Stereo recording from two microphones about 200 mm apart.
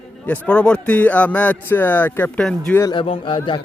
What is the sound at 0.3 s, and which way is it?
Speech, 5° left (ahead or behind).